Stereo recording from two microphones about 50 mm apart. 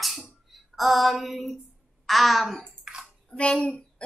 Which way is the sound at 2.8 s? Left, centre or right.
Centre.